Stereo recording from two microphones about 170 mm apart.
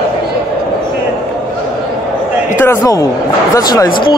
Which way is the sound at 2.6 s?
15° left (ahead or behind).